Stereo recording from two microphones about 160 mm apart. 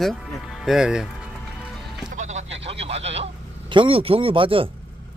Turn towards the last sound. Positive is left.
turn(degrees=-35)  # may be behind; listen again after turning